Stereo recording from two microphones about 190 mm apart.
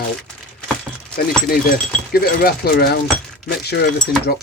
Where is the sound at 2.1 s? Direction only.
55° left (ahead or behind).